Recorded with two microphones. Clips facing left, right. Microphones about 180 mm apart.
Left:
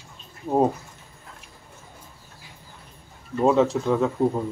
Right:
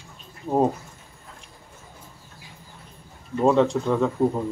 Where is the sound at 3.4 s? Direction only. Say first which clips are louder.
Even; centre (ahead or behind).